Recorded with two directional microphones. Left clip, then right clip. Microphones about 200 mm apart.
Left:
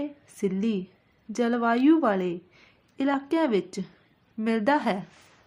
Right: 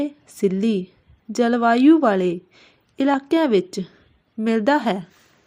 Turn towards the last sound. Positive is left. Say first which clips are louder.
# right 5 dB
turn(degrees=-20)  # may be behind; listen again after turning